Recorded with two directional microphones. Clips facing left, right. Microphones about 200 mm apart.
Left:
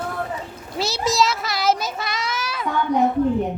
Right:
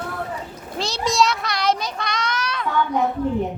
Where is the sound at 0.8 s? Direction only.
5° left (ahead or behind).